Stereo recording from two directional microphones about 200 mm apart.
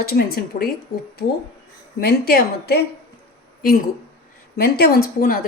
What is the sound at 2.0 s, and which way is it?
Speech, 50° left (ahead or behind).